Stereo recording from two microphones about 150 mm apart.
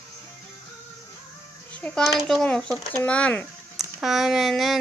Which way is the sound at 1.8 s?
5° left (ahead or behind).